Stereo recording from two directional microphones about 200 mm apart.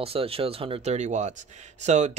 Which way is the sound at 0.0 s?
30° right (ahead or behind).